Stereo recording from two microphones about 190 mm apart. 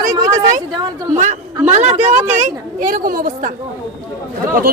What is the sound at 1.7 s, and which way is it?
A woman's voice, 35° right (ahead or behind).